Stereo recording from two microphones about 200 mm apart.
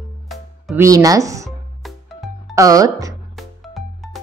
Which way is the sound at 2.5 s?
15° right (ahead or behind).